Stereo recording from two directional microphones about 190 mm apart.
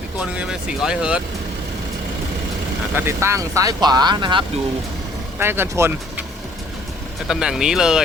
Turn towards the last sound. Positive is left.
turn(degrees=-5)  # may be behind; listen again after turning